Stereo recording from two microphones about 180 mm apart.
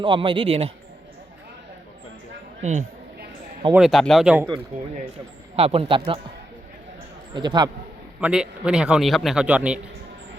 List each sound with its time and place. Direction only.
0.0 s speech: 25° right (ahead or behind)
2.6 s speech: 40° right (ahead or behind)
3.7 s a man's voice: 5° right (ahead or behind)
4.7 s speech: 50° right (ahead or behind)
5.5 s speech: 35° right (ahead or behind)
7.3 s speech: 25° right (ahead or behind)
8.2 s a man's voice: 5° right (ahead or behind)